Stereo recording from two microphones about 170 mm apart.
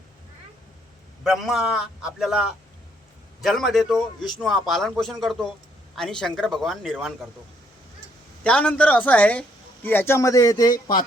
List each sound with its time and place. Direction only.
1.2 s a man's voice: centre (ahead or behind)
8.4 s speech: 5° left (ahead or behind)